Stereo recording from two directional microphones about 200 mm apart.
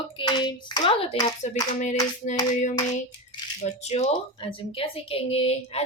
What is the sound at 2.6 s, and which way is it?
Speech, 40° left (ahead or behind).